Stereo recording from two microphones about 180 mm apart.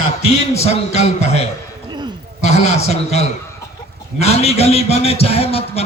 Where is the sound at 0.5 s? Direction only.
35° left (ahead or behind).